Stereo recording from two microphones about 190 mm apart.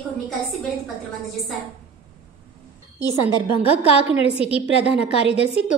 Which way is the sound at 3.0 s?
25° left (ahead or behind).